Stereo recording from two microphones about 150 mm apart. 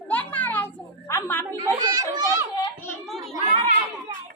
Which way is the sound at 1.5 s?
30° right (ahead or behind).